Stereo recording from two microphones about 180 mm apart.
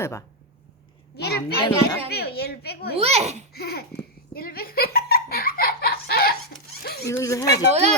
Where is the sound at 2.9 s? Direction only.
35° right (ahead or behind).